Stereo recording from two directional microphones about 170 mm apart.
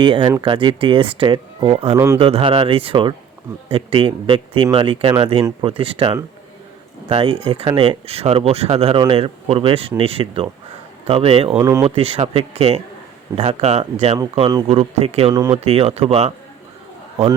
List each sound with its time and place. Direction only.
0.0 s speech: 25° right (ahead or behind)
11.5 s speech: 15° right (ahead or behind)
11.9 s speech: 35° right (ahead or behind)
15.3 s speech: 20° right (ahead or behind)
15.5 s speech: 35° right (ahead or behind)